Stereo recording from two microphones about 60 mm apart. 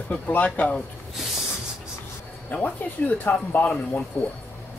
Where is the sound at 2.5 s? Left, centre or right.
Left.